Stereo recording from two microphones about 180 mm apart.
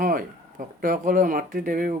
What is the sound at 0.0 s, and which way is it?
Speech, 50° right (ahead or behind).